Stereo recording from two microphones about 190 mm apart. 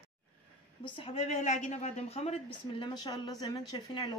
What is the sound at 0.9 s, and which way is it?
Speech, 30° left (ahead or behind).